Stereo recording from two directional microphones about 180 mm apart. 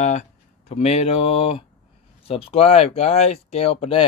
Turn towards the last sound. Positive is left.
turn(degrees=35)  # may be behind; listen again after turning